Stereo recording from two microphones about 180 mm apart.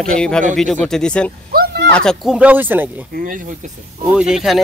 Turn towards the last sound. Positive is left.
turn(degrees=0)  # may be behind; listen again after turning